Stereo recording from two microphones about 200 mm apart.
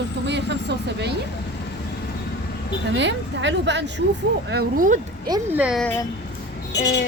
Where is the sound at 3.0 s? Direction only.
65° right (ahead or behind).